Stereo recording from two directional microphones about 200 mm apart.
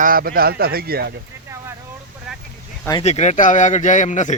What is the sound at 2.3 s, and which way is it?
Vehicle, centre (ahead or behind).